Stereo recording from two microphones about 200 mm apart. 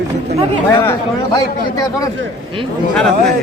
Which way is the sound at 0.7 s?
15° left (ahead or behind).